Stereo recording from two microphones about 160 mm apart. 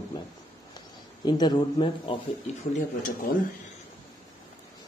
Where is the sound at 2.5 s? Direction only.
45° left (ahead or behind).